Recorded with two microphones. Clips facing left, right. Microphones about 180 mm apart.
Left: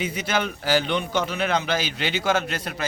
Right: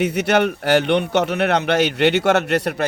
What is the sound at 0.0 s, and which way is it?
A man's voice, 70° right (ahead or behind).